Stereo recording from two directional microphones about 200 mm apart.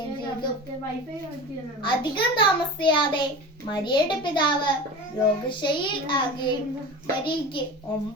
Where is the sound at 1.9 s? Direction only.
25° left (ahead or behind).